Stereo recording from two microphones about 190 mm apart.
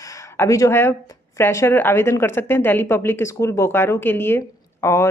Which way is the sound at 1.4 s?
15° left (ahead or behind).